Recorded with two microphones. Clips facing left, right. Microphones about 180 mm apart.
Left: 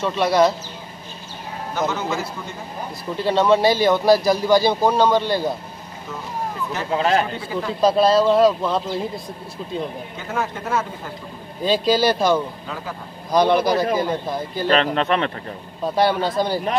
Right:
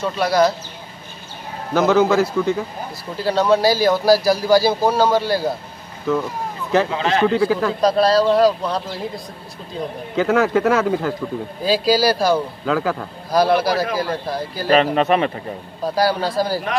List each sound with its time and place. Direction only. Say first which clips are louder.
0.0 s a man's voice: even; centre (ahead or behind)
1.7 s speech: right 9 dB; 90° right
3.3 s a man's voice: even; centre (ahead or behind)
7.0 s speech: even; 40° left (ahead or behind)
7.2 s speech: right 9 dB; 90° right
7.8 s a man's voice: left 1 dB; centre (ahead or behind)
10.1 s speech: right 13 dB; 90° right
11.6 s a man's voice: right 1 dB; 5° right (ahead or behind)
12.6 s speech: right 11 dB; 90° right
13.3 s a man's voice: even; 5° right (ahead or behind)
13.9 s speech: left 1 dB; 20° left (ahead or behind)
14.5 s a man's voice: right 3 dB; 5° right (ahead or behind)